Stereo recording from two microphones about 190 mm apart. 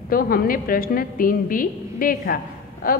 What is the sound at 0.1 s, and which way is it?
A woman's voice, 50° left (ahead or behind).